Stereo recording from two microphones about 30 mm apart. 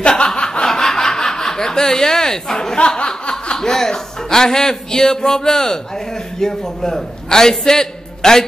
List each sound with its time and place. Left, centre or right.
0.3 s snicker: left
0.7 s snicker: centre
3.1 s chuckle: left
3.5 s speech: centre